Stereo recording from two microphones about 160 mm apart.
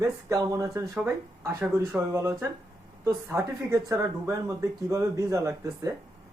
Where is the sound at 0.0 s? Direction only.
20° right (ahead or behind).